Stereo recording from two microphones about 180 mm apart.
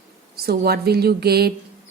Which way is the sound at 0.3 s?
60° right (ahead or behind).